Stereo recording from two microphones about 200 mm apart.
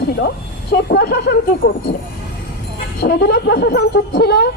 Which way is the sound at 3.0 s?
55° left (ahead or behind).